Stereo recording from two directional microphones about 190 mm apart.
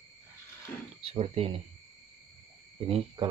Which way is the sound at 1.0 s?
30° right (ahead or behind).